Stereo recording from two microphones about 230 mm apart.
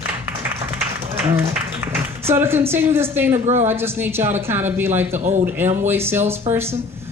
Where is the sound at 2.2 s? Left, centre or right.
Centre.